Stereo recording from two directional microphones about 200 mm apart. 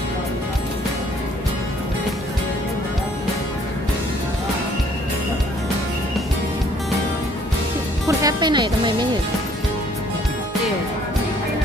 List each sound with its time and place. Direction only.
8.2 s music: 20° right (ahead or behind)